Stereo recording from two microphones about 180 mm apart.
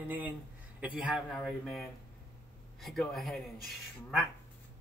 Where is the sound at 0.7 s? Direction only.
5° right (ahead or behind).